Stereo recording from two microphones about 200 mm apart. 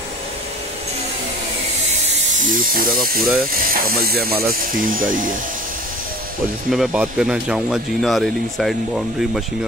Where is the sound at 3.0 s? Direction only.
45° right (ahead or behind).